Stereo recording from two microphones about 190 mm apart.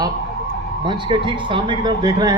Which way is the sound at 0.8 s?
25° right (ahead or behind).